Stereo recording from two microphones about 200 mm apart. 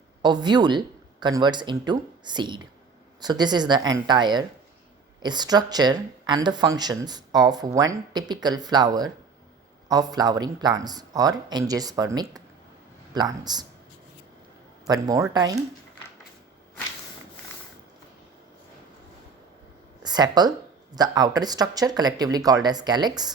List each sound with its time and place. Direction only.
0.2 s speech: 20° right (ahead or behind)
14.8 s speech: 20° right (ahead or behind)
20.0 s speech: 20° right (ahead or behind)